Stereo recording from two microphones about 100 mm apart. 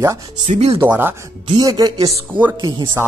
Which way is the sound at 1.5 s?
40° right (ahead or behind).